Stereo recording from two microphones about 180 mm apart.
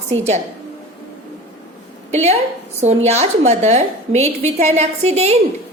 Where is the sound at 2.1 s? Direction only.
35° right (ahead or behind).